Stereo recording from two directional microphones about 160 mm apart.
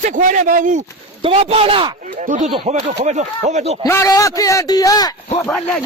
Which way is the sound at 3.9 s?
20° left (ahead or behind).